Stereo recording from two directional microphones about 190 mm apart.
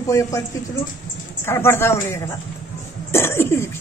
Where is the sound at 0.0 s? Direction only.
15° left (ahead or behind).